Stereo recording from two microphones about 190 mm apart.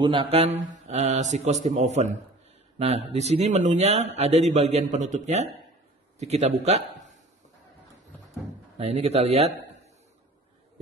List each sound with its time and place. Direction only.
0.0 s speech: 25° right (ahead or behind)
3.1 s speech: 35° right (ahead or behind)
8.7 s speech: 35° right (ahead or behind)